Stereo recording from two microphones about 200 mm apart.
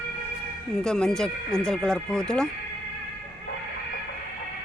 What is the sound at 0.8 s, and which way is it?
Speech, 5° left (ahead or behind).